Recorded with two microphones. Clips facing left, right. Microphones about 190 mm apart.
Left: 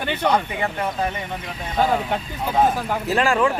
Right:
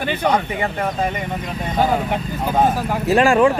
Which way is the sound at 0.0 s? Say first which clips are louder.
Right 2 dB; 10° right (ahead or behind).